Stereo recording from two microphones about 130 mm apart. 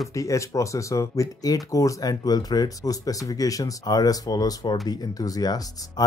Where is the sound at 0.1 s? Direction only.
25° left (ahead or behind).